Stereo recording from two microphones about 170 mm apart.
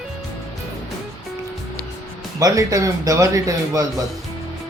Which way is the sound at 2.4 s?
20° right (ahead or behind).